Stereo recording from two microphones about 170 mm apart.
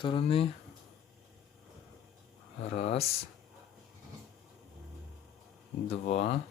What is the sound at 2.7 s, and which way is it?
Speech, 40° left (ahead or behind).